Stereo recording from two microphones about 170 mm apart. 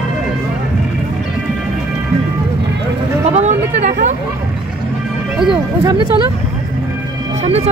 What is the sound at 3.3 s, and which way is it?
Chatter, 45° right (ahead or behind).